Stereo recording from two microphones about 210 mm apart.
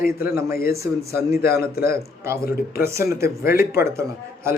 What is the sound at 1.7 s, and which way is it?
Speech, 45° left (ahead or behind).